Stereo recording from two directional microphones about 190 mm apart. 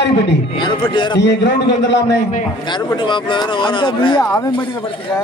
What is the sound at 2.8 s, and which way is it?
Speech, 25° left (ahead or behind).